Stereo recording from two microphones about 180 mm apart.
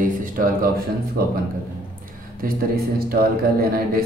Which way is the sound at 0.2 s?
50° right (ahead or behind).